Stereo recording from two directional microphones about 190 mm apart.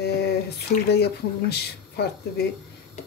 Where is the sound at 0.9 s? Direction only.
60° left (ahead or behind).